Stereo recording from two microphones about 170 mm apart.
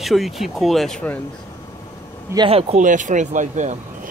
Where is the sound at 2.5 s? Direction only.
35° right (ahead or behind).